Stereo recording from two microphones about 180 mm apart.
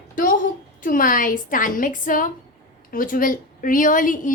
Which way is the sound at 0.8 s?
50° left (ahead or behind).